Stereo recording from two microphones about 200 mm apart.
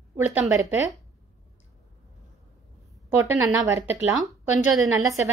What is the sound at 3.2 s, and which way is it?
Speech, 15° right (ahead or behind).